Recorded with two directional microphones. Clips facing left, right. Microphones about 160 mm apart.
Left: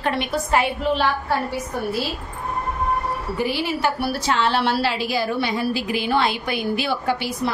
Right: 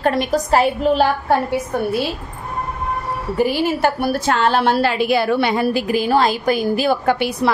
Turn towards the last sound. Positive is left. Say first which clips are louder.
# right 6 dB
turn(degrees=-60)  # may be behind; listen again after turning